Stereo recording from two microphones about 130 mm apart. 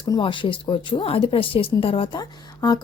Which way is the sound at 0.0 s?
40° left (ahead or behind).